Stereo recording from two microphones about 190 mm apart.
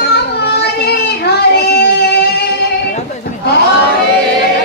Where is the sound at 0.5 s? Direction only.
55° left (ahead or behind).